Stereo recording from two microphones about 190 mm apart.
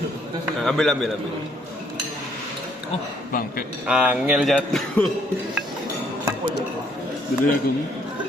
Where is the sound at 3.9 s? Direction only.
5° right (ahead or behind).